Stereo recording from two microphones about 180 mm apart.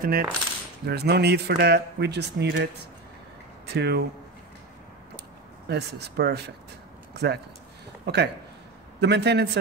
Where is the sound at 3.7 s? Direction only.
65° right (ahead or behind).